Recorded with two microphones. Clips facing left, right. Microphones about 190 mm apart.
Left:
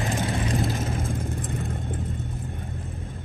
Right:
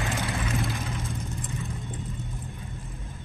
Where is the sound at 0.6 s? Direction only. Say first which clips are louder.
Left 5 dB; 45° left (ahead or behind).